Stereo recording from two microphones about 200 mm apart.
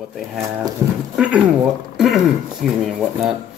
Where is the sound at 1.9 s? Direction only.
Centre (ahead or behind).